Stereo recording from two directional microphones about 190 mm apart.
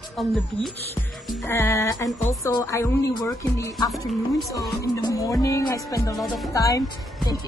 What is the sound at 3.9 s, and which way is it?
Speech, centre (ahead or behind).